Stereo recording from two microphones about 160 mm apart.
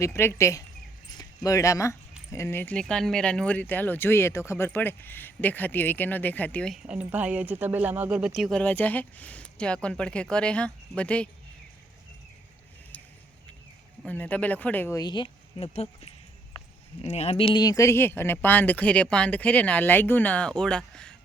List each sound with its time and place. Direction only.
0.0 s speech: 15° left (ahead or behind)
6.8 s speech: 5° right (ahead or behind)
8.6 s speech: 10° left (ahead or behind)
12.9 s vehicle: 10° left (ahead or behind)
14.0 s speech: 10° left (ahead or behind)